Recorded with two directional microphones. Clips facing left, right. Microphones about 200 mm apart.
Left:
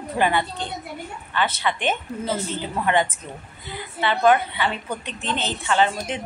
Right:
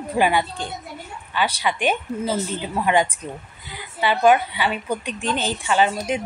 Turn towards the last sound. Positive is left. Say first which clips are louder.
# right 2 dB
turn(degrees=-10)  # may be behind; listen again after turning